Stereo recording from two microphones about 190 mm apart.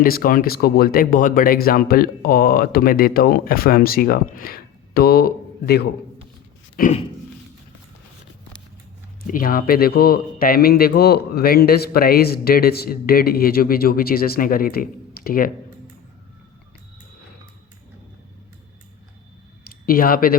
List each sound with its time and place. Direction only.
0.0 s speech: 50° left (ahead or behind)
9.2 s speech: 45° left (ahead or behind)
19.8 s speech: 50° left (ahead or behind)